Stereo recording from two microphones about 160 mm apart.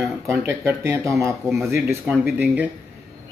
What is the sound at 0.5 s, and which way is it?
Speech, 15° right (ahead or behind).